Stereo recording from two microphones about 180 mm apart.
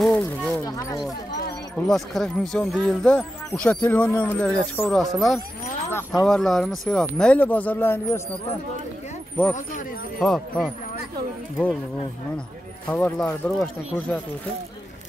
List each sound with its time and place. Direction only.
0.0 s a sound: 5° left (ahead or behind)
0.7 s a sound: 20° left (ahead or behind)
1.9 s speech: centre (ahead or behind)
5.9 s speech: 15° left (ahead or behind)
6.2 s speech: centre (ahead or behind)
10.1 s speech: 5° left (ahead or behind)
12.9 s speech: 10° left (ahead or behind)